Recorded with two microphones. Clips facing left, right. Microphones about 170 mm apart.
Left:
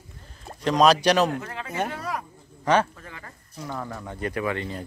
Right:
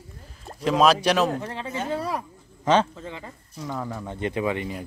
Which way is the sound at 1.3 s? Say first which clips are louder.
Right 2 dB; 30° right (ahead or behind).